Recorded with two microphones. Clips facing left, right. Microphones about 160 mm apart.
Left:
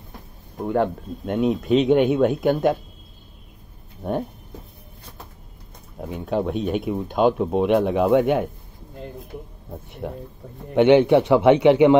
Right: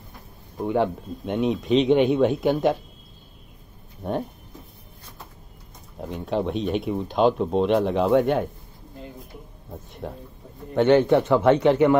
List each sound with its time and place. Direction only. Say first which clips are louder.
0.6 s speech: left 1 dB; centre (ahead or behind)
5.9 s speech: left 1 dB; centre (ahead or behind)
9.7 s a man's voice: left 3 dB; 10° left (ahead or behind)